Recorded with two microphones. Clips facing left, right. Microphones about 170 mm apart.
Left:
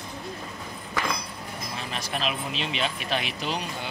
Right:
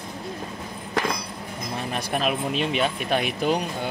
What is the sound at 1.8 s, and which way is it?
Speech, 55° right (ahead or behind).